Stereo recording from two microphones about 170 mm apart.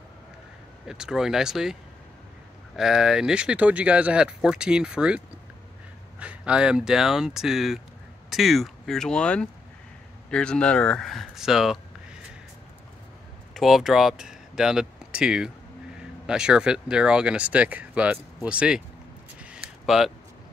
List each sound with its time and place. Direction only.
0.8 s speech: 5° right (ahead or behind)
13.5 s speech: centre (ahead or behind)
19.4 s a sound: 5° right (ahead or behind)